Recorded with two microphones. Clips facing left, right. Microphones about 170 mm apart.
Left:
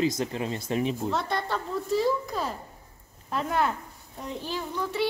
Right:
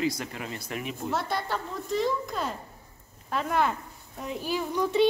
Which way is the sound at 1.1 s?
Centre (ahead or behind).